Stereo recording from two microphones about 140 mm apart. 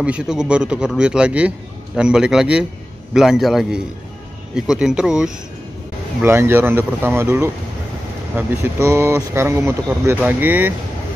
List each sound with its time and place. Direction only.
0.0 s a man's voice: 5° right (ahead or behind)
6.2 s a man's voice: 15° right (ahead or behind)